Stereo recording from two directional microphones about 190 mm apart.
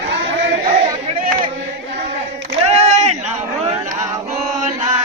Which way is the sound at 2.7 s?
35° right (ahead or behind).